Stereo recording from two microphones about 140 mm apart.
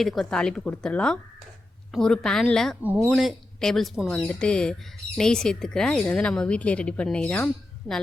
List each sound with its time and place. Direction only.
0.0 s speech: centre (ahead or behind)
2.8 s speech: 10° right (ahead or behind)
3.1 s a woman's voice: centre (ahead or behind)